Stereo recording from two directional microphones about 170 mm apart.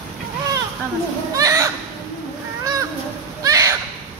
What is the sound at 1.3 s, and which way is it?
Speech, 20° right (ahead or behind).